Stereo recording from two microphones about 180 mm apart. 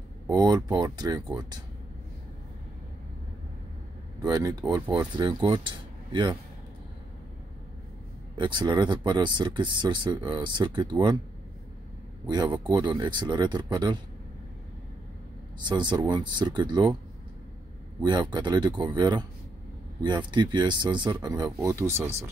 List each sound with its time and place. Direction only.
0.3 s speech: 20° right (ahead or behind)
4.2 s speech: 20° right (ahead or behind)
8.4 s speech: 25° right (ahead or behind)
12.6 s speech: 25° right (ahead or behind)
15.6 s speech: 25° right (ahead or behind)
18.0 s speech: 25° right (ahead or behind)